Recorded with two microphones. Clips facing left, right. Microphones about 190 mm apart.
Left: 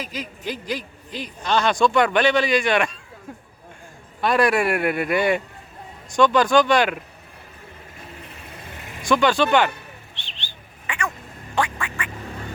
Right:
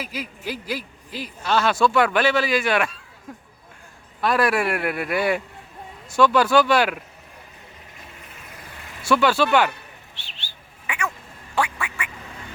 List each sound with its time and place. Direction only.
0.0 s speech: 10° right (ahead or behind)
8.5 s vehicle: 20° left (ahead or behind)
9.0 s speech: 5° right (ahead or behind)
10.2 s bird: 5° right (ahead or behind)
11.5 s quack: 10° right (ahead or behind)